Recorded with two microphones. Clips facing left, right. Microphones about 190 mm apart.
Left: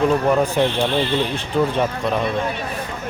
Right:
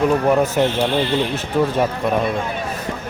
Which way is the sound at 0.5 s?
5° right (ahead or behind).